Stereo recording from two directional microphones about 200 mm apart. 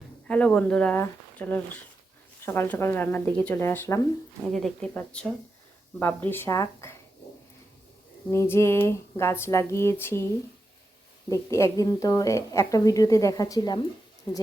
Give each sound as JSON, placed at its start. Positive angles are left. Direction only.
{"t": 0.3, "sound": "a woman's voice", "side_deg": 5}
{"t": 4.4, "sound": "a woman's voice", "side_deg": 0}
{"t": 8.3, "sound": "a woman's voice", "side_deg": 15}
{"t": 11.3, "sound": "a woman's voice", "side_deg": 15}